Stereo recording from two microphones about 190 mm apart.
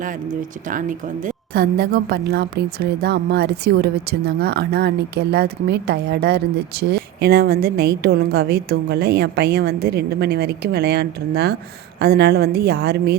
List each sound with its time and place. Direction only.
0.0 s a woman's voice: 45° right (ahead or behind)
1.7 s speech: 55° right (ahead or behind)